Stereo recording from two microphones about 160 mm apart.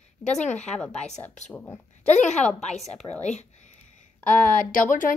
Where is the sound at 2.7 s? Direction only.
Centre (ahead or behind).